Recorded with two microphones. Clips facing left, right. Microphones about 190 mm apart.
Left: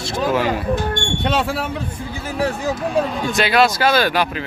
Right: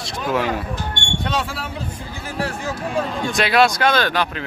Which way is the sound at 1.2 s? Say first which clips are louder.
Left 5 dB; 65° left (ahead or behind).